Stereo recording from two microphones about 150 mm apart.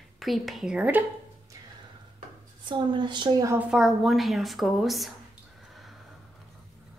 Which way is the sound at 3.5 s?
5° right (ahead or behind).